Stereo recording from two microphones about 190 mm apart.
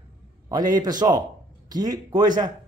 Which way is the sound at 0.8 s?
20° right (ahead or behind).